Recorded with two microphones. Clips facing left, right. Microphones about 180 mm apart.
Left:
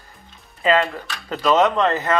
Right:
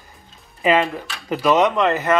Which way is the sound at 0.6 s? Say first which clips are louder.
Right 1 dB; 15° right (ahead or behind).